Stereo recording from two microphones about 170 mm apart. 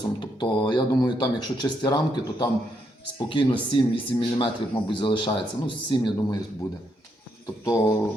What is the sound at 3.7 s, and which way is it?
Speech, 30° left (ahead or behind).